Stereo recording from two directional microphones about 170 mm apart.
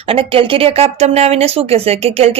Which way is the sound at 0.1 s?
30° right (ahead or behind).